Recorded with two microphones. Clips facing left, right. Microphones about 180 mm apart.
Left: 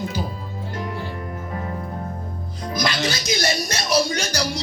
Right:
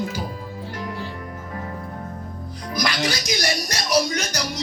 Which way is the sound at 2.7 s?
25° left (ahead or behind).